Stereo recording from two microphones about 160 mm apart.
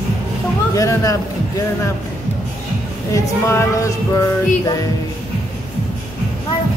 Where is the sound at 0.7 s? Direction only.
20° left (ahead or behind).